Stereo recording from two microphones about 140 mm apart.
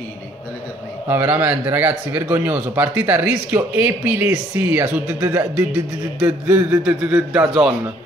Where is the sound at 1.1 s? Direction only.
15° right (ahead or behind).